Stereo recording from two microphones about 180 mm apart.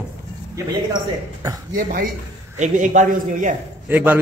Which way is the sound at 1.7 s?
50° right (ahead or behind).